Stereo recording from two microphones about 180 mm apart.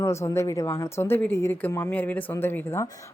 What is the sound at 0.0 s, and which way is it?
A woman's voice, 15° left (ahead or behind).